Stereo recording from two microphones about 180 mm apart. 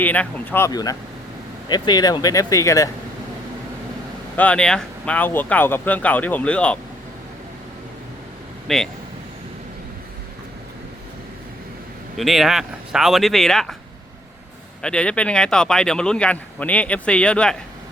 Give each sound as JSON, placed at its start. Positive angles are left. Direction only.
{"t": 0.0, "sound": "speech", "side_deg": 10}
{"t": 4.4, "sound": "speech", "side_deg": 5}
{"t": 8.6, "sound": "speech", "side_deg": 0}
{"t": 12.1, "sound": "speech", "side_deg": 0}
{"t": 14.8, "sound": "speech", "side_deg": 5}